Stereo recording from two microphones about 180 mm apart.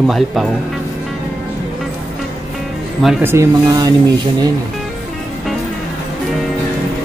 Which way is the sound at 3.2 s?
20° right (ahead or behind).